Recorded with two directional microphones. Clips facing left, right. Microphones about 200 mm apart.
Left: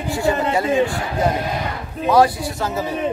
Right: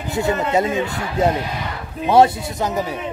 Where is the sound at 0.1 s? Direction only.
20° right (ahead or behind).